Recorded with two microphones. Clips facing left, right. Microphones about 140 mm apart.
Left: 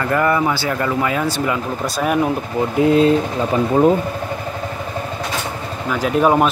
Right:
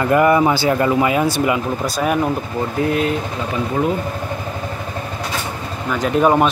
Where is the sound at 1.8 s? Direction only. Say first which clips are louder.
Left 1 dB; centre (ahead or behind).